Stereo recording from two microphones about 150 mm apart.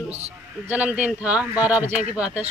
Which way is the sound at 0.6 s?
10° right (ahead or behind).